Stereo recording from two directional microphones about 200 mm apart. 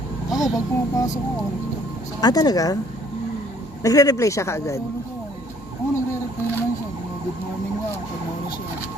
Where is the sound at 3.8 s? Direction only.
15° left (ahead or behind).